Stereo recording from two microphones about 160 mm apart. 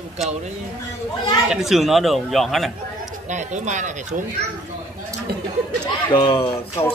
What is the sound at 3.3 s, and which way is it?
Speech, 50° right (ahead or behind).